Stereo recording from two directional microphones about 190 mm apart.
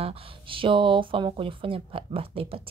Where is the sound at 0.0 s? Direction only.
30° right (ahead or behind).